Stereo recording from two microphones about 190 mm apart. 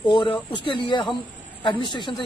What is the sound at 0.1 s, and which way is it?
Speech, 25° left (ahead or behind).